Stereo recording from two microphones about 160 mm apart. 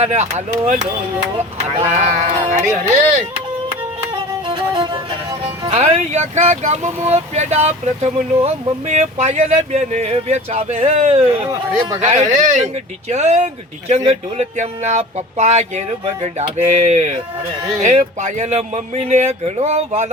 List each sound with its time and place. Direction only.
0.0 s speech: 45° right (ahead or behind)
4.1 s music: 30° right (ahead or behind)
5.7 s speech: 45° right (ahead or behind)